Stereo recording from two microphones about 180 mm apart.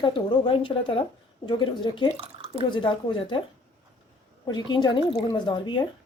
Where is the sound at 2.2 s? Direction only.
30° right (ahead or behind).